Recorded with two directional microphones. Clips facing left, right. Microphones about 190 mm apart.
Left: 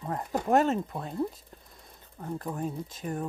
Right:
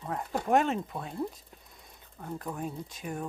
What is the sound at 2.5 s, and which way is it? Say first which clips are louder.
Speech: left 3 dB; centre (ahead or behind).